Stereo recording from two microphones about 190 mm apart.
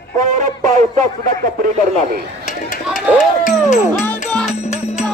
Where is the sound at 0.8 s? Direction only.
40° right (ahead or behind).